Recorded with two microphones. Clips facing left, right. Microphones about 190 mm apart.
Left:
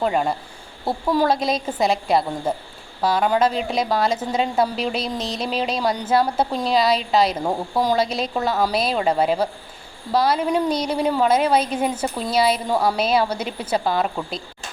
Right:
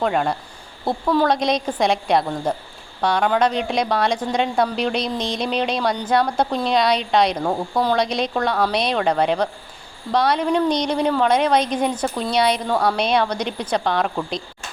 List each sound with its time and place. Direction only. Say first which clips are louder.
0.0 s a woman's voice: even; centre (ahead or behind)